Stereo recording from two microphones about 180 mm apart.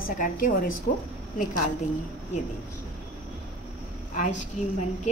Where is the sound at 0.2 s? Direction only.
50° left (ahead or behind).